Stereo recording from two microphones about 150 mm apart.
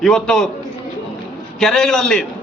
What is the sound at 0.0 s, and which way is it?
Speech, centre (ahead or behind).